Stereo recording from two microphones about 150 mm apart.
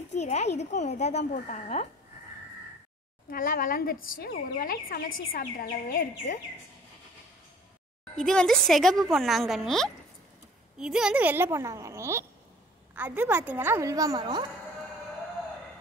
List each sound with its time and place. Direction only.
0.1 s speech: 50° left (ahead or behind)
3.3 s a woman's voice: 75° left (ahead or behind)
8.2 s a woman's voice: 5° left (ahead or behind); by 14.4 s 25° right (ahead or behind)